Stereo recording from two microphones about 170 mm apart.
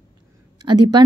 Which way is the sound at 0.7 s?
25° right (ahead or behind).